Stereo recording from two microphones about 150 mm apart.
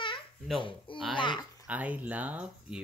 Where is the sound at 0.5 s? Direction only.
35° left (ahead or behind).